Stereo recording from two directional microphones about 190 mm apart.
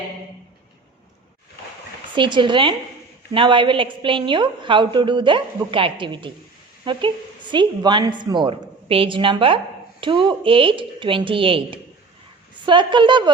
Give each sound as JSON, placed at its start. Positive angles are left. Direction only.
{"t": 2.1, "sound": "a woman's voice", "side_deg": -25}
{"t": 7.5, "sound": "a woman's voice", "side_deg": -25}